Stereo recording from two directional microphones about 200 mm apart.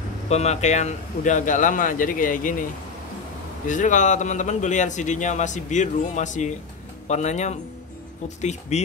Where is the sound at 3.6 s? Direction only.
40° left (ahead or behind).